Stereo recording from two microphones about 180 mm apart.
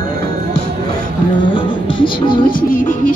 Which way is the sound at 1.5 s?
25° left (ahead or behind).